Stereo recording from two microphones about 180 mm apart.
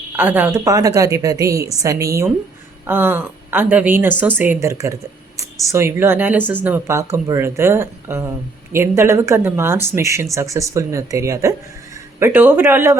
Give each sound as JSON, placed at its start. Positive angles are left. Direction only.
{"t": 0.2, "sound": "speech", "side_deg": -10}